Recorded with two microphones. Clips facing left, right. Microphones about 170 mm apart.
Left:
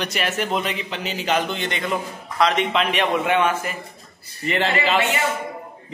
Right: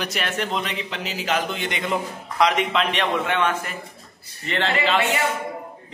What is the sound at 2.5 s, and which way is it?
A man's voice, 5° left (ahead or behind).